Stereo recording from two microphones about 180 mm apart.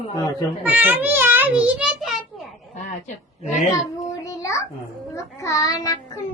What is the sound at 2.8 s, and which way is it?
Speech, 45° left (ahead or behind).